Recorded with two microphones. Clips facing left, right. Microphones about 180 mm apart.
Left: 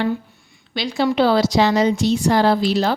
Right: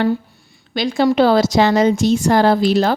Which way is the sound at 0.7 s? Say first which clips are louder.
Right 4 dB; 50° right (ahead or behind).